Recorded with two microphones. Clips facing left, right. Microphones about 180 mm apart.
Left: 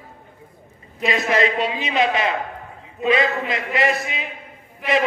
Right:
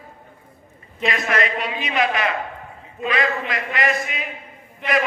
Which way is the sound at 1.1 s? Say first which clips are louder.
Left 4 dB; 25° left (ahead or behind).